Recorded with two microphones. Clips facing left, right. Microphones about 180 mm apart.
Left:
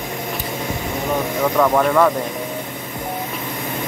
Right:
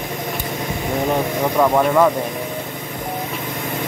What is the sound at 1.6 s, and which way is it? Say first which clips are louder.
Speech: right 1 dB; 15° right (ahead or behind).